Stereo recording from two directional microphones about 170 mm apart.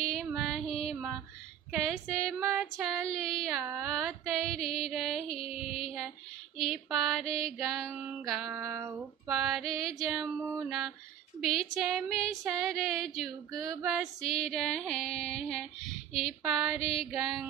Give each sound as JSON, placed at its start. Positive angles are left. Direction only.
{"t": 0.1, "sound": "music", "side_deg": 0}
{"t": 1.7, "sound": "female singing", "side_deg": 0}
{"t": 5.3, "sound": "mantra", "side_deg": 35}
{"t": 5.9, "sound": "mantra", "side_deg": 0}
{"t": 6.6, "sound": "female singing", "side_deg": 0}
{"t": 8.5, "sound": "female singing", "side_deg": -15}
{"t": 8.9, "sound": "female singing", "side_deg": 0}
{"t": 11.4, "sound": "female singing", "side_deg": 0}